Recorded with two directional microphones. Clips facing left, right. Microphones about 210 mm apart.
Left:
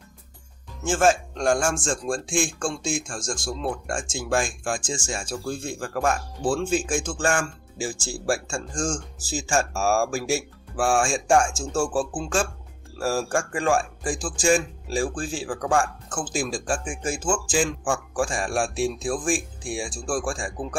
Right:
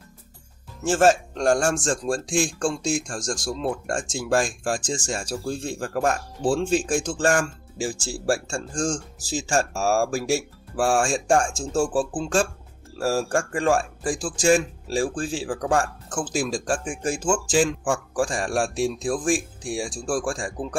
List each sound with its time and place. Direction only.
0.8 s speech: 40° right (ahead or behind)